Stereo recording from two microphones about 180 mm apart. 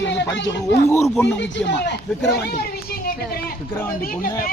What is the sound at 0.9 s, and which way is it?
Speech, 15° left (ahead or behind).